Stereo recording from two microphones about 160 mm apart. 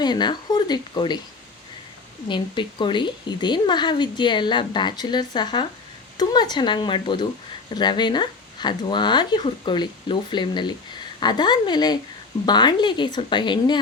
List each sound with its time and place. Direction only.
0.0 s a woman's voice: 25° left (ahead or behind)
2.2 s a woman's voice: 30° left (ahead or behind)